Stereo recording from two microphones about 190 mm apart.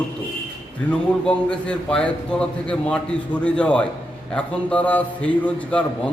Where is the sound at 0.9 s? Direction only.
5° left (ahead or behind).